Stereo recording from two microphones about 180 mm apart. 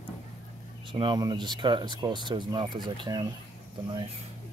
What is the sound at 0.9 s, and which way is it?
Speech, 25° right (ahead or behind).